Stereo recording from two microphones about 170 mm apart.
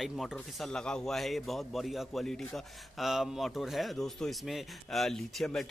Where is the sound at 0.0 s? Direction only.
Centre (ahead or behind).